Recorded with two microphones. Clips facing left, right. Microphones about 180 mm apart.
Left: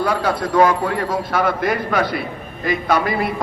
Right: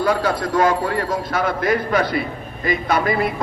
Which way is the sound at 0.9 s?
50° left (ahead or behind).